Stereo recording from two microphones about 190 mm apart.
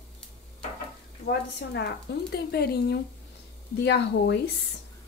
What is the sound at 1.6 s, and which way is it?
Speech, 65° left (ahead or behind).